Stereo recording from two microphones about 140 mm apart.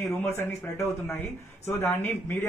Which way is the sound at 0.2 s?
20° left (ahead or behind).